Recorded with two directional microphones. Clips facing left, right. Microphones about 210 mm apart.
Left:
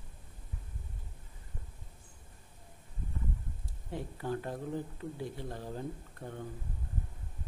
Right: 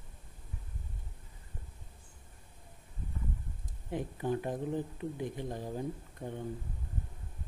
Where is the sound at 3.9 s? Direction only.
15° right (ahead or behind).